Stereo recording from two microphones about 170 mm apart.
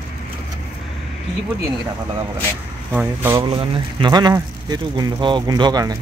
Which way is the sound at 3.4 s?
30° right (ahead or behind).